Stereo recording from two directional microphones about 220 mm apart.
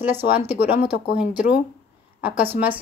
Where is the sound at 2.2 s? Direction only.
5° right (ahead or behind).